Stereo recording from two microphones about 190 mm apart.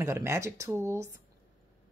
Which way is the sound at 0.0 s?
15° right (ahead or behind).